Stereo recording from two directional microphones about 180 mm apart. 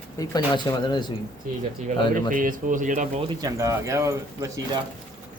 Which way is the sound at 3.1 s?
25° right (ahead or behind).